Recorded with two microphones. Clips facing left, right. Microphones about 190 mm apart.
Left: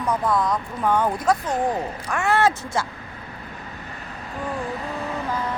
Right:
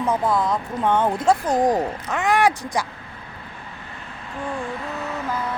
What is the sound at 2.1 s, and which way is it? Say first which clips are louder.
Speech: even; 15° right (ahead or behind).